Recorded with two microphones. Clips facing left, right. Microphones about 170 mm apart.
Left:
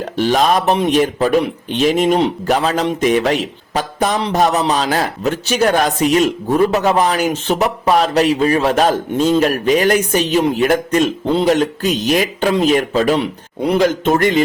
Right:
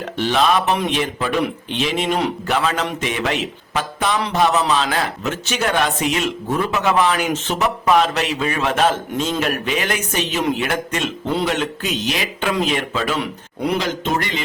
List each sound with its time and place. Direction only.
0.2 s speech: 40° left (ahead or behind)